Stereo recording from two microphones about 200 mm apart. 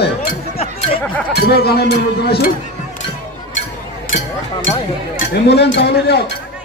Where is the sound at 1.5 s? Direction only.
50° left (ahead or behind).